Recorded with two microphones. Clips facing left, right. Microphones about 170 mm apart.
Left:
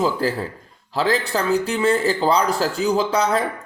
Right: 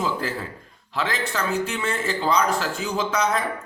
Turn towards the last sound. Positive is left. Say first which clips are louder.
# left 4 dB
turn(degrees=30)  # may be behind; listen again after turning